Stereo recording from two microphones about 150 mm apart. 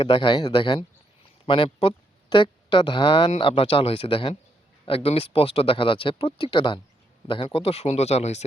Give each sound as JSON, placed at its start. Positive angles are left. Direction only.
{"t": 0.0, "sound": "speech", "side_deg": 35}